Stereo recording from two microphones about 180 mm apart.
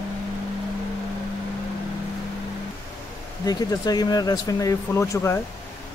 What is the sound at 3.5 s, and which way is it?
Speech, 20° left (ahead or behind).